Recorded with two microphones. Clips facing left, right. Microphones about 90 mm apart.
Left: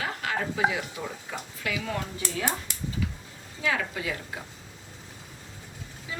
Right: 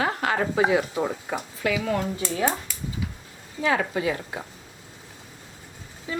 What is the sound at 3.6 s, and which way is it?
Speech, 30° right (ahead or behind).